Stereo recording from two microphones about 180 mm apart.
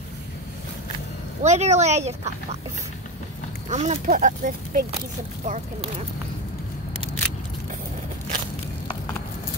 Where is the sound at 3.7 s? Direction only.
40° right (ahead or behind).